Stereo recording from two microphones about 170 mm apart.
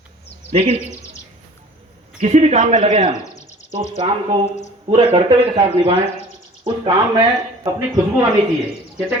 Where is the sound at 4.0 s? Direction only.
30° right (ahead or behind).